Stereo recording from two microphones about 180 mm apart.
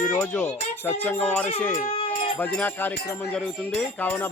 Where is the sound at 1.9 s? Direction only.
30° left (ahead or behind).